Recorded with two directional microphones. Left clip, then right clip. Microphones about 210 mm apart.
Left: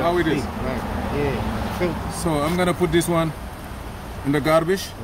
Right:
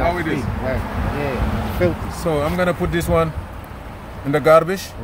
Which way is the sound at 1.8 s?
50° right (ahead or behind).